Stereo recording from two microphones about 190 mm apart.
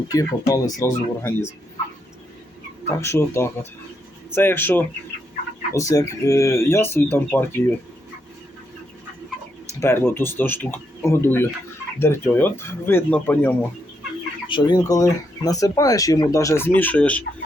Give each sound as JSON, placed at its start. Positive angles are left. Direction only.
{"t": 0.1, "sound": "speech", "side_deg": 20}
{"t": 3.0, "sound": "speech", "side_deg": 15}
{"t": 9.8, "sound": "speech", "side_deg": 10}
{"t": 14.4, "sound": "speech", "side_deg": 25}